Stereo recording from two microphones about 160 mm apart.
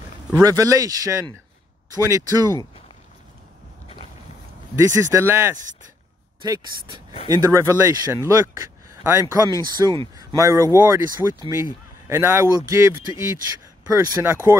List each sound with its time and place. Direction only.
0.3 s speech: 20° right (ahead or behind)
4.7 s speech: 20° right (ahead or behind)
7.2 s speech: 20° right (ahead or behind)